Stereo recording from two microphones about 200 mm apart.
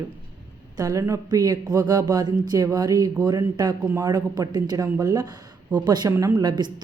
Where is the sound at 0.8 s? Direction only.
15° right (ahead or behind).